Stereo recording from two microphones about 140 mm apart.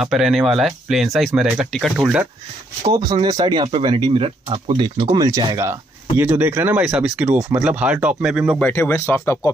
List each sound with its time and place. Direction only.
0.0 s speech: centre (ahead or behind)
2.9 s speech: 30° right (ahead or behind)
5.7 s speech: 15° right (ahead or behind)
8.5 s speech: 10° left (ahead or behind)